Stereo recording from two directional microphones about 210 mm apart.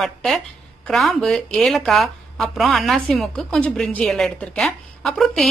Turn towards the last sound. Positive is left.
turn(degrees=0)  # may be behind; listen again after turning